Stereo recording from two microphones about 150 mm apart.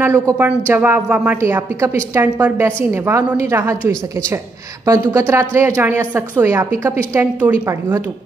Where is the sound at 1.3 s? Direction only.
20° right (ahead or behind).